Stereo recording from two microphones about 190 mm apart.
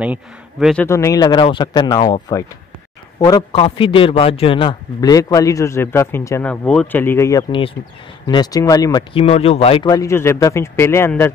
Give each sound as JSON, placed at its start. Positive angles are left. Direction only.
{"t": 0.0, "sound": "speech", "side_deg": -5}
{"t": 0.8, "sound": "a man's voice", "side_deg": 15}
{"t": 9.1, "sound": "a man's voice", "side_deg": 30}